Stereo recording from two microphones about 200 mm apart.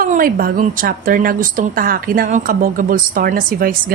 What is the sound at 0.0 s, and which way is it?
A woman's voice, 45° right (ahead or behind).